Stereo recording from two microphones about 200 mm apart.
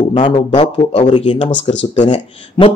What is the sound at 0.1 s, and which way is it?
A man's voice, 25° left (ahead or behind).